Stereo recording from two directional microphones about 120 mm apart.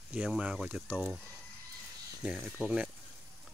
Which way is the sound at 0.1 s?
10° right (ahead or behind).